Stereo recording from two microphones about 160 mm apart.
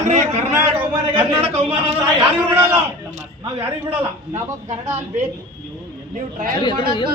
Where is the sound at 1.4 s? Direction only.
40° right (ahead or behind).